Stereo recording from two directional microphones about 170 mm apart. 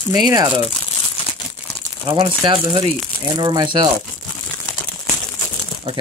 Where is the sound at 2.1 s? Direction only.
25° right (ahead or behind).